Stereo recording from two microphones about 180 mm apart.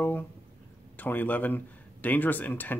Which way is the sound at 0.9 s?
10° left (ahead or behind).